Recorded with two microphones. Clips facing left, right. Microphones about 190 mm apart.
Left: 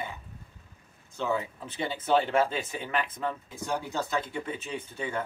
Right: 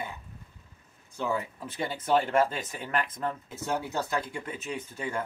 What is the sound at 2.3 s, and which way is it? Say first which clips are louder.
Speech: even; 10° left (ahead or behind).